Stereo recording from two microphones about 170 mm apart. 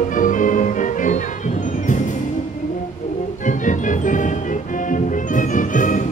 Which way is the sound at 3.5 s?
50° left (ahead or behind).